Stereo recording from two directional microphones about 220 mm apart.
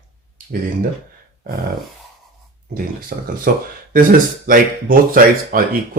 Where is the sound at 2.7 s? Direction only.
40° right (ahead or behind).